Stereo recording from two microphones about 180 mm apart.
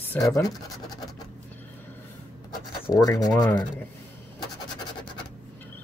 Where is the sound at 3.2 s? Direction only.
20° left (ahead or behind).